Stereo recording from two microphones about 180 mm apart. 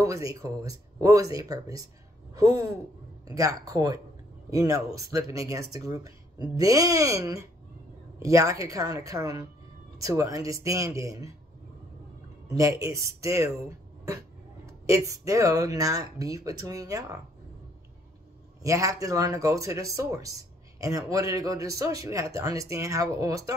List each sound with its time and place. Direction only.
0.0 s speech: 20° right (ahead or behind)
3.3 s speech: 20° right (ahead or behind)
12.5 s speech: 15° right (ahead or behind)
14.9 s speech: 15° right (ahead or behind)
18.6 s speech: 15° right (ahead or behind)